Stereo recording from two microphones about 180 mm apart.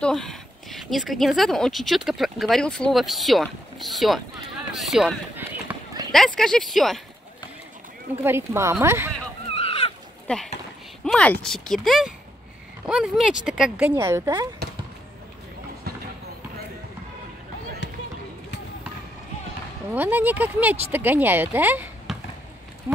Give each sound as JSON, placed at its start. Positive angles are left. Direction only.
{"t": 0.0, "sound": "speech", "side_deg": 0}
{"t": 6.1, "sound": "speech", "side_deg": 5}
{"t": 8.2, "sound": "speech", "side_deg": -15}
{"t": 9.5, "sound": "a sound", "side_deg": 30}
{"t": 10.2, "sound": "speech", "side_deg": 5}
{"t": 19.9, "sound": "speech", "side_deg": -10}